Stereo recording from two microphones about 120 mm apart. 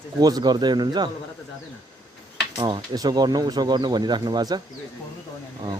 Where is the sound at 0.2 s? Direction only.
35° right (ahead or behind).